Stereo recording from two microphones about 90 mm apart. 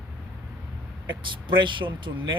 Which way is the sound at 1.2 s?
65° right (ahead or behind).